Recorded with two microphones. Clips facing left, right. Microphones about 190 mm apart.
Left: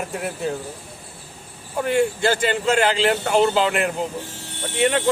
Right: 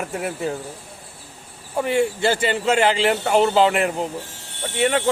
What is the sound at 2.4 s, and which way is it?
Speech, 5° right (ahead or behind).